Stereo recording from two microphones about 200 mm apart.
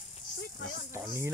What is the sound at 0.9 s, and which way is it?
Music, 10° right (ahead or behind).